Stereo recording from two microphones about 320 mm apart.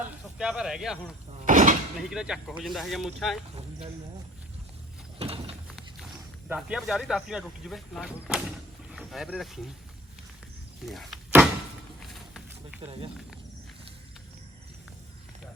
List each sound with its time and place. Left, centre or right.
0.0 s snake: centre
1.5 s door: right
2.0 s speech: centre
5.2 s a sound: centre
5.6 s a sound: centre
6.5 s speech: centre
10.8 s a sound: centre
12.0 s snake: centre
12.8 s speech: centre